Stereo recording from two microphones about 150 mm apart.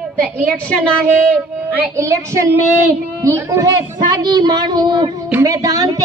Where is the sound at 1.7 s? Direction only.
15° right (ahead or behind).